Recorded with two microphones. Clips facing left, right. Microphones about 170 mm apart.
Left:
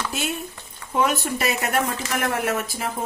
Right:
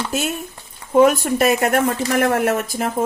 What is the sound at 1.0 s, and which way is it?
A woman's voice, 50° right (ahead or behind).